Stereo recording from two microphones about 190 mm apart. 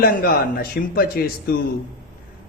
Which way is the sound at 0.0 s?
50° left (ahead or behind).